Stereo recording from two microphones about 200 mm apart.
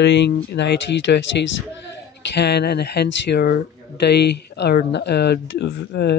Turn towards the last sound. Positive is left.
turn(degrees=55)  # may be behind; listen again after turning